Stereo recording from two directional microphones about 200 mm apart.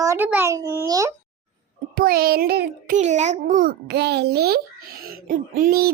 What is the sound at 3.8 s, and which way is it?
A child's voice, 55° right (ahead or behind).